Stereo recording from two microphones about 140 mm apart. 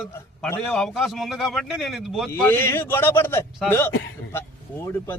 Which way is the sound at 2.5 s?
15° left (ahead or behind).